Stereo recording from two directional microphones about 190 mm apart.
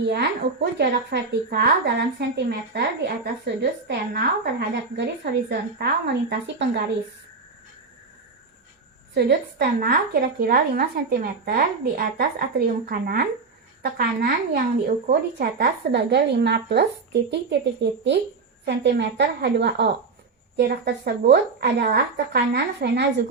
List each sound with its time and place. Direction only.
0.0 s speech: 65° right (ahead or behind)
9.1 s a woman's voice: 55° right (ahead or behind)